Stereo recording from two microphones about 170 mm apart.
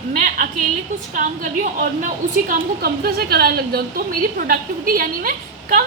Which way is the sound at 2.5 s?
65° right (ahead or behind).